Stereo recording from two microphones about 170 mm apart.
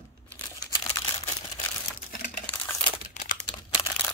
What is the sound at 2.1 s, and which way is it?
Crumpling, 50° left (ahead or behind).